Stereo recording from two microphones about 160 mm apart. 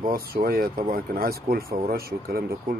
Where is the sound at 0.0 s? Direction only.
70° right (ahead or behind).